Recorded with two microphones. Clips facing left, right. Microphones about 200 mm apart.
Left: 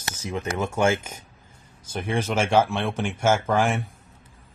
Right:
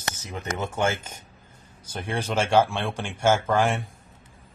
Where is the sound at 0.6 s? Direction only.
10° left (ahead or behind).